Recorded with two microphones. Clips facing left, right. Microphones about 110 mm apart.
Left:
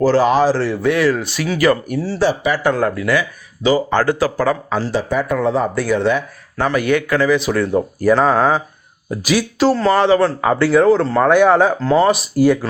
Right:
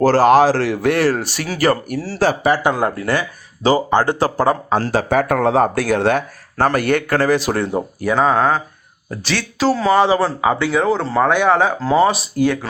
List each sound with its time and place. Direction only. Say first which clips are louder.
0.0 s speech: even; 45° right (ahead or behind)
0.3 s speech: right 2 dB; 90° right
1.0 s speech: left 1 dB; 40° right (ahead or behind)
2.5 s speech: even; 20° right (ahead or behind)
2.9 s speech: left 2 dB; 35° right (ahead or behind)
3.8 s speech: even; 20° right (ahead or behind)
4.8 s speech: right 2 dB; 50° right (ahead or behind); by 6.0 s 90° right
6.0 s speech: even; 50° right (ahead or behind)
7.3 s speech: left 1 dB; 35° right (ahead or behind)
8.0 s speech: left 2 dB; centre (ahead or behind)
11.3 s speech: left 4 dB; 5° left (ahead or behind)
11.8 s speech: left 1 dB; 5° right (ahead or behind)